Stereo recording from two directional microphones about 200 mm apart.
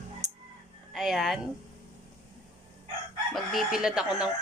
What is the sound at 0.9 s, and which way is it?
Speech, centre (ahead or behind).